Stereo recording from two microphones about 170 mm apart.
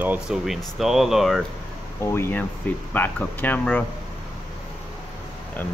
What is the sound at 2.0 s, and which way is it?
Speech, 15° left (ahead or behind).